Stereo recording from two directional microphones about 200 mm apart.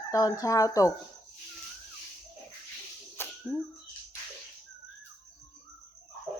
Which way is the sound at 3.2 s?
10° left (ahead or behind).